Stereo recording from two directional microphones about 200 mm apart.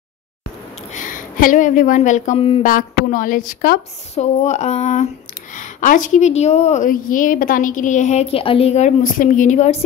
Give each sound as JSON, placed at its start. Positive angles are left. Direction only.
{"t": 0.9, "sound": "speech", "side_deg": 40}
{"t": 2.6, "sound": "a woman's voice", "side_deg": 45}
{"t": 4.1, "sound": "a woman's voice", "side_deg": 35}